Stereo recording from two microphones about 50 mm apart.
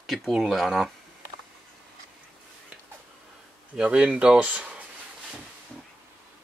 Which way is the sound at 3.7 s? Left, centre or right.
Right.